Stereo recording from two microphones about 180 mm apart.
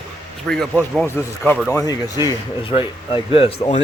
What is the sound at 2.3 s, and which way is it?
Speech, 30° left (ahead or behind).